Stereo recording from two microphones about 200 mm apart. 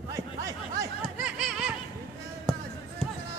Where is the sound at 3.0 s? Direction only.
5° left (ahead or behind).